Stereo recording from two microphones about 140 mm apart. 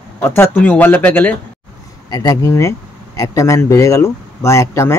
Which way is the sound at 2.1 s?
25° left (ahead or behind).